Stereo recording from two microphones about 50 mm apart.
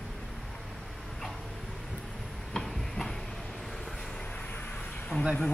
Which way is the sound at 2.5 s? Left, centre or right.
Centre.